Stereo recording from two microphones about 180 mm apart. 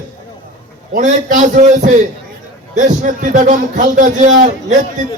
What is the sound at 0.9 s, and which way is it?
A man's voice, 45° right (ahead or behind).